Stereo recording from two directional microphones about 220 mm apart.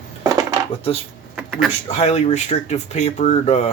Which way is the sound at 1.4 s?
5° right (ahead or behind).